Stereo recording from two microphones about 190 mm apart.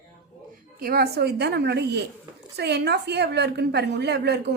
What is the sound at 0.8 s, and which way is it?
A woman's voice, 55° right (ahead or behind).